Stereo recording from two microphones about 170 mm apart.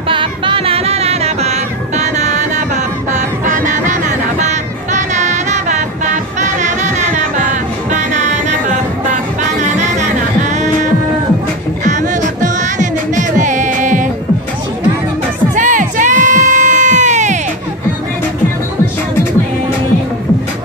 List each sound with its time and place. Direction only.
0.1 s music: 30° right (ahead or behind)
11.8 s music: 45° right (ahead or behind)
15.5 s crowd: 50° right (ahead or behind)